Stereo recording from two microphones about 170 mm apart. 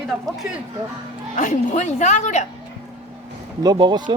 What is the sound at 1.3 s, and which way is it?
A woman's voice, 50° left (ahead or behind).